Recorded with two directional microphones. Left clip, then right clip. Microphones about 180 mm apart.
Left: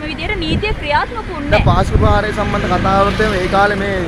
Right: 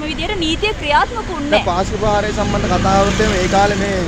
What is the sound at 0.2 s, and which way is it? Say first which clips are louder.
Speech: right 1 dB; 15° right (ahead or behind).